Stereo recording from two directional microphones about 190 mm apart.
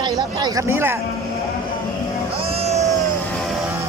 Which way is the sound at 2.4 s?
30° right (ahead or behind).